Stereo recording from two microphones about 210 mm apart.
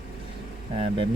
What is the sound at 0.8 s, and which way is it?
Speech, 25° right (ahead or behind).